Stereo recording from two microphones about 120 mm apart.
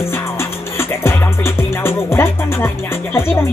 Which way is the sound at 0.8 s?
20° left (ahead or behind).